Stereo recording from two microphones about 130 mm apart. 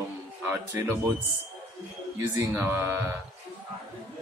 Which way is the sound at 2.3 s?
20° right (ahead or behind).